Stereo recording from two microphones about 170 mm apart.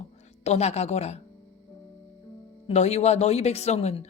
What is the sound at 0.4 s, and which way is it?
Speech, 40° left (ahead or behind).